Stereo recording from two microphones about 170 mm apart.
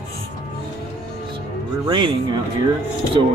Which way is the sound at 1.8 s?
25° right (ahead or behind).